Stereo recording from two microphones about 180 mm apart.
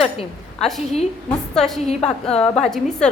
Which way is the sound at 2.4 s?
35° left (ahead or behind).